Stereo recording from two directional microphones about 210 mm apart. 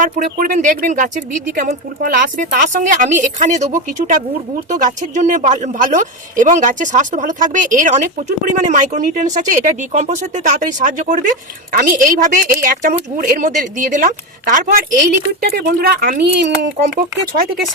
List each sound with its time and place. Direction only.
0.0 s a woman's voice: 40° right (ahead or behind)